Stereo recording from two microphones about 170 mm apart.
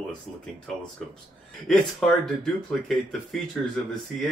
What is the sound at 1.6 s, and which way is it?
Speech, 5° left (ahead or behind).